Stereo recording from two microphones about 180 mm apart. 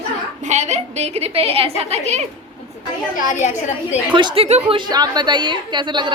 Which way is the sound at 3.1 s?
45° left (ahead or behind).